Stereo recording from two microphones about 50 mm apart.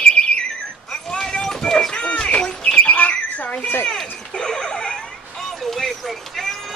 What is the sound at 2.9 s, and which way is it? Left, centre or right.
Squawk, left.